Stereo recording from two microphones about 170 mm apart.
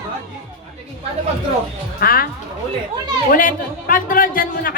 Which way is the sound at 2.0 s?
60° left (ahead or behind).